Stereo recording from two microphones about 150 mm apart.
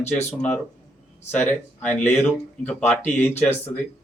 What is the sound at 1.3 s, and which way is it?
Speech, 10° left (ahead or behind).